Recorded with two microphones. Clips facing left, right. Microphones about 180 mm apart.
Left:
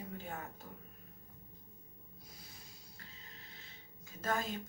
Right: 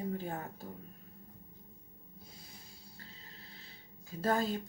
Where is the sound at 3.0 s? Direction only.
35° right (ahead or behind).